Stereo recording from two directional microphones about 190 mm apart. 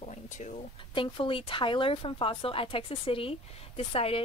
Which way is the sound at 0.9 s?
25° left (ahead or behind).